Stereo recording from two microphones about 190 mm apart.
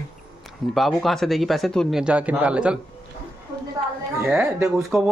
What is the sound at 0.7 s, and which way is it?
Speech, centre (ahead or behind).